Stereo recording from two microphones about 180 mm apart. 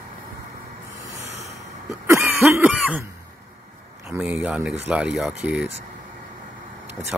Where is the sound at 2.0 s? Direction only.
10° right (ahead or behind).